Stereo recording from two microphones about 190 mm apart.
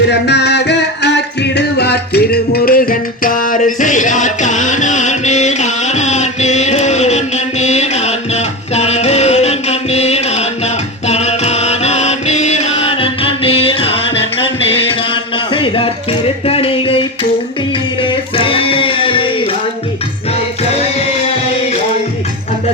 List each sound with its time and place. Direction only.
0.1 s music: 60° left (ahead or behind); by 13.9 s 30° left (ahead or behind)
14.2 s music: 70° left (ahead or behind)
15.1 s music: 25° left (ahead or behind)